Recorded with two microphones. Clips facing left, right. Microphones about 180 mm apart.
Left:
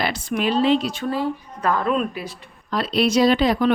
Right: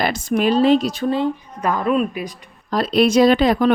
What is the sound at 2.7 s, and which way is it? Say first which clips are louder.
Speech: right 4 dB; 45° right (ahead or behind).